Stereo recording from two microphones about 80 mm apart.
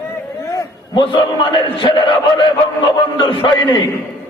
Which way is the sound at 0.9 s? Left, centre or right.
Left.